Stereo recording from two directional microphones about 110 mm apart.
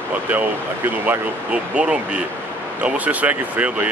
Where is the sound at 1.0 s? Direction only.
15° right (ahead or behind).